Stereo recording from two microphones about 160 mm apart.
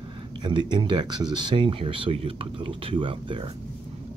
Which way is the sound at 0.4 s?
30° right (ahead or behind).